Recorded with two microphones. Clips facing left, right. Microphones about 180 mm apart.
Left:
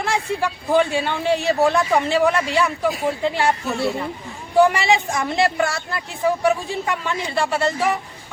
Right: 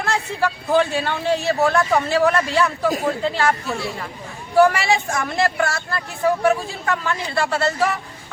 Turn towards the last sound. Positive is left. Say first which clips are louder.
# even
turn(degrees=15)  # may be behind; listen again after turning